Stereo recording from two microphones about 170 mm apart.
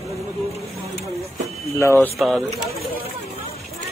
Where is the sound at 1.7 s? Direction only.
15° left (ahead or behind).